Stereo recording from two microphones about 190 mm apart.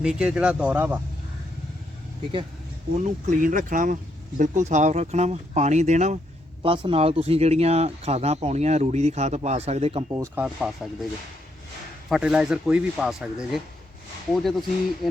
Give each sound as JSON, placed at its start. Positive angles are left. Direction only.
{"t": 0.0, "sound": "speech", "side_deg": -5}
{"t": 3.0, "sound": "speech", "side_deg": -40}
{"t": 10.1, "sound": "speech", "side_deg": -10}
{"t": 12.0, "sound": "speech", "side_deg": -5}